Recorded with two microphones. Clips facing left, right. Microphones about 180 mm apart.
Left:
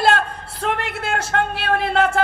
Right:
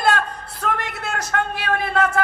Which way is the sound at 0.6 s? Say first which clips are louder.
Left 2 dB; 30° left (ahead or behind).